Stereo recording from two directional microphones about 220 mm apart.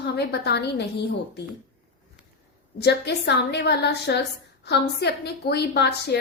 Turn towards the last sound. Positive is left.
turn(degrees=50)  # may be behind; listen again after turning